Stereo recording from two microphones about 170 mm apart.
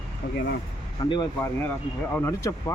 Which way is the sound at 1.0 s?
25° left (ahead or behind).